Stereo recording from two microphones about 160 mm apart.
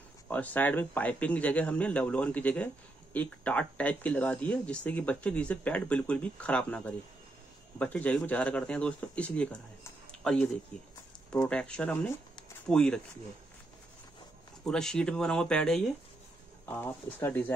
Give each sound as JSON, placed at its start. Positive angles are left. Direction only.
{"t": 0.3, "sound": "speech", "side_deg": 10}
{"t": 14.6, "sound": "speech", "side_deg": 5}